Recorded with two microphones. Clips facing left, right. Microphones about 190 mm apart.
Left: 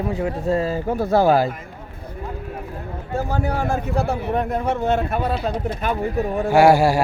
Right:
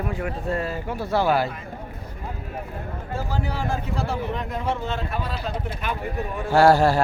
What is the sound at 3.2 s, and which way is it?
Speech, 55° left (ahead or behind).